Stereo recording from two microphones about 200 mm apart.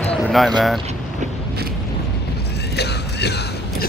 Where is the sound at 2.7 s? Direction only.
55° left (ahead or behind).